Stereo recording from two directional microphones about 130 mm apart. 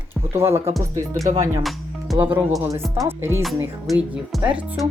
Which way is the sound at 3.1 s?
20° right (ahead or behind).